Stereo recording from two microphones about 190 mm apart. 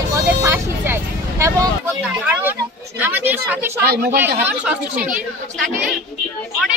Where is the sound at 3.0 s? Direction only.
10° right (ahead or behind).